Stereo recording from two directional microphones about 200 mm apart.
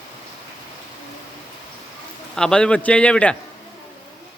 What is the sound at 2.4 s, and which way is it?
Speech, 5° left (ahead or behind).